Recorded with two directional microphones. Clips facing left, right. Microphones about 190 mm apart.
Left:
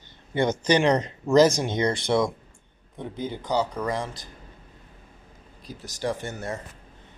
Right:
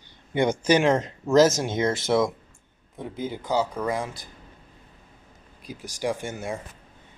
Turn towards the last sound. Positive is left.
turn(degrees=-10)  # may be behind; listen again after turning